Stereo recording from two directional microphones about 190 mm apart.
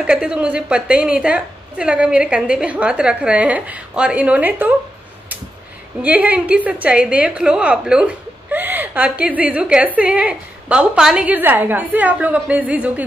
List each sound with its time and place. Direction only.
0.0 s a woman's voice: 5° right (ahead or behind)
6.0 s a woman's voice: 10° right (ahead or behind)